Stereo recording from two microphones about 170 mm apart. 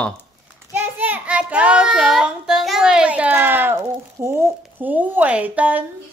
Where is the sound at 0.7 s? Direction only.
10° right (ahead or behind).